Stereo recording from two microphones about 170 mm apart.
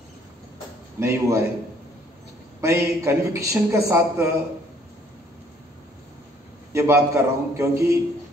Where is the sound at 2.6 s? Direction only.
15° right (ahead or behind).